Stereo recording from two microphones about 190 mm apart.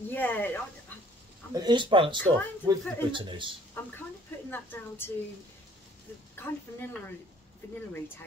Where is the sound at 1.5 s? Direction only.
20° right (ahead or behind).